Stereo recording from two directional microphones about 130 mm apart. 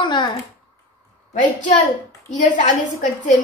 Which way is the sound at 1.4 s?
75° left (ahead or behind).